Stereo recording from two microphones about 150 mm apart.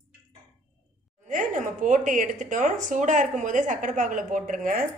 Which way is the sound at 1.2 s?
55° right (ahead or behind).